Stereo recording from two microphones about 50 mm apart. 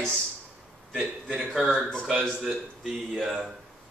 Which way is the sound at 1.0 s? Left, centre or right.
Centre.